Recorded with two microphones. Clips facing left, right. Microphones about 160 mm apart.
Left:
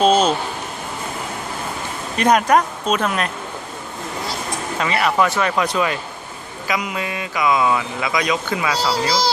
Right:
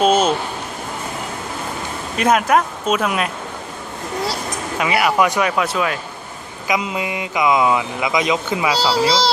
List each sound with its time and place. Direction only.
0.0 s speech: 10° right (ahead or behind)
2.1 s speech: 5° right (ahead or behind)
4.8 s speech: 10° right (ahead or behind)
6.7 s speech: 20° right (ahead or behind)